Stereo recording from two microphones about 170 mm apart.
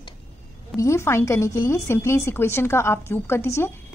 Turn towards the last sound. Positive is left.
turn(degrees=15)  # may be behind; listen again after turning